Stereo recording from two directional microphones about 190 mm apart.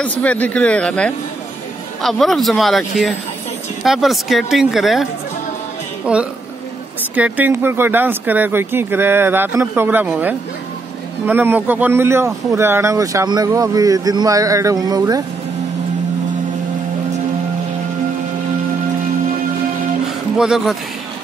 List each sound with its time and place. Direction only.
0.0 s a man's voice: 5° left (ahead or behind)
6.1 s a man's voice: 5° right (ahead or behind)
20.3 s a man's voice: 5° right (ahead or behind)